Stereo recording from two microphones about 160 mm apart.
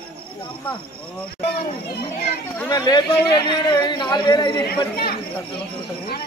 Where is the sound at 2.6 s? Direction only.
25° left (ahead or behind).